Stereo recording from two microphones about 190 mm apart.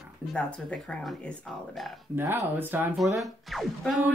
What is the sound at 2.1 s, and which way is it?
Speech, 10° right (ahead or behind).